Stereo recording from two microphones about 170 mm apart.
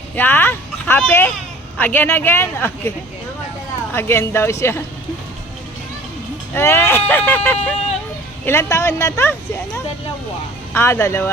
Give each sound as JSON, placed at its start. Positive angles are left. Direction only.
{"t": 0.2, "sound": "speech", "side_deg": 10}
{"t": 3.9, "sound": "speech", "side_deg": 15}
{"t": 6.5, "sound": "speech", "side_deg": 15}
{"t": 10.8, "sound": "speech", "side_deg": 15}